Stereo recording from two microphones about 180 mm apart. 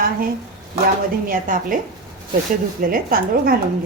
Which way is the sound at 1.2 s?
50° right (ahead or behind).